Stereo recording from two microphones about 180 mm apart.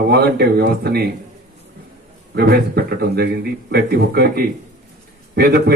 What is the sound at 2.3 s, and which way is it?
A man's voice, 60° right (ahead or behind).